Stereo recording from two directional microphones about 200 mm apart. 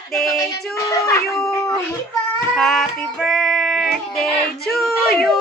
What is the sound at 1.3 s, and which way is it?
Cat, centre (ahead or behind).